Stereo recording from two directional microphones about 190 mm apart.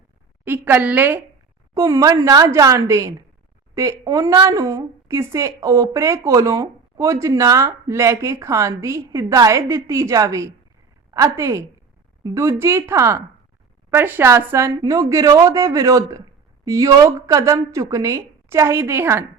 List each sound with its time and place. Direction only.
0.4 s a woman's voice: 10° right (ahead or behind)